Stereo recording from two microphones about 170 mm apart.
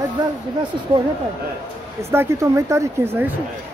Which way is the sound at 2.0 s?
15° right (ahead or behind).